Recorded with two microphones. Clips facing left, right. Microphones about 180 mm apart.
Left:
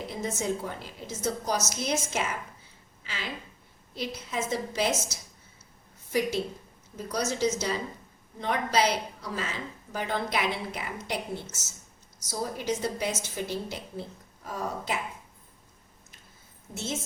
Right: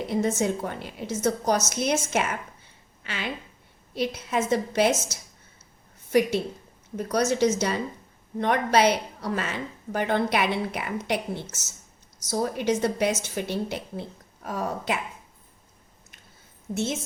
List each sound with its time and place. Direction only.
0.1 s a woman's voice: 65° right (ahead or behind)
12.3 s a woman's voice: 65° right (ahead or behind)